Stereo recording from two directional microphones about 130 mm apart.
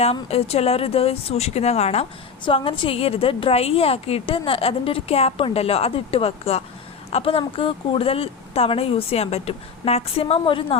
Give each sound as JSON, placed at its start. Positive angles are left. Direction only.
{"t": 0.0, "sound": "a woman's voice", "side_deg": 50}
{"t": 2.4, "sound": "a woman's voice", "side_deg": 40}